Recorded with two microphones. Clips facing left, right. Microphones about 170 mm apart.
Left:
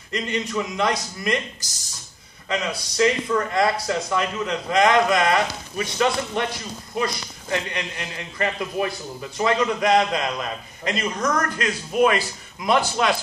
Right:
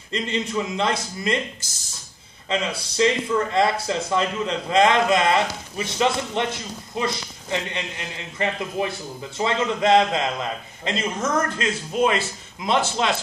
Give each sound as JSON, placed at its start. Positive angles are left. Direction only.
{"t": 0.1, "sound": "a man's voice", "side_deg": -25}